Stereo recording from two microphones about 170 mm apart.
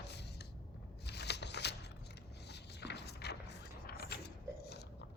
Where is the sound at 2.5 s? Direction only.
80° left.